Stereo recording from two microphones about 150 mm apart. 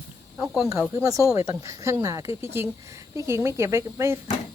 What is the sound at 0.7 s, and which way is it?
Speech, 20° right (ahead or behind).